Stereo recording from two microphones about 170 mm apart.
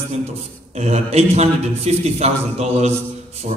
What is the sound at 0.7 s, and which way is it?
A man's voice, 40° right (ahead or behind).